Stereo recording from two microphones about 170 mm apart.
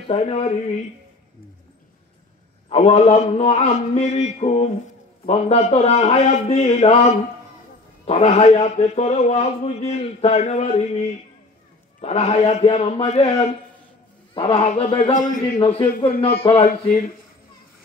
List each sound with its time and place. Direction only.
0.1 s a man's voice: 35° left (ahead or behind)
2.7 s a man's voice: 40° left (ahead or behind)
12.0 s a man's voice: 40° left (ahead or behind)